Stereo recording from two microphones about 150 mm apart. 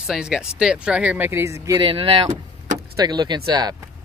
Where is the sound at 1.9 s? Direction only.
35° right (ahead or behind).